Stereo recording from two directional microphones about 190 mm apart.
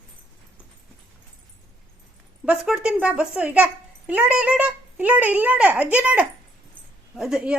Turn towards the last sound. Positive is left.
turn(degrees=-5)  # may be behind; listen again after turning